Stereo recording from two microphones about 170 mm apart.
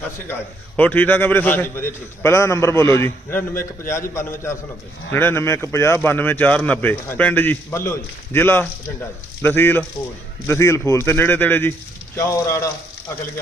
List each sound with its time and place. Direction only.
0.8 s speech: 10° left (ahead or behind)